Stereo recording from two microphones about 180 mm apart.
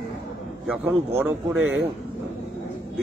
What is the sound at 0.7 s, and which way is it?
Speech, 10° right (ahead or behind).